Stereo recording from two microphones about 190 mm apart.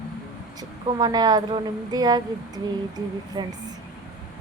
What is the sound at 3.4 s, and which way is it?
Speech, 25° right (ahead or behind).